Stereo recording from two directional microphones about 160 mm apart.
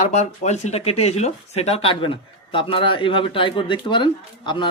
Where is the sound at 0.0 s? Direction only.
45° left (ahead or behind).